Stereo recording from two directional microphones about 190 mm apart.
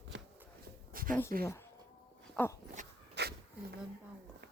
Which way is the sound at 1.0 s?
50° right (ahead or behind).